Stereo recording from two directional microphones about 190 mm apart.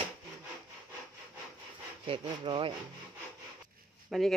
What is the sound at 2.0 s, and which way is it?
Speech, 25° right (ahead or behind).